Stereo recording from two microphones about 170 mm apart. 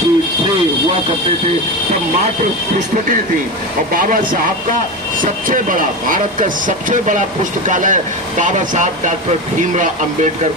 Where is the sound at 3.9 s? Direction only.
55° right (ahead or behind).